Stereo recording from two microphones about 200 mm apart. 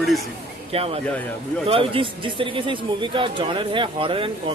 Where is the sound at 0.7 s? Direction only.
30° right (ahead or behind).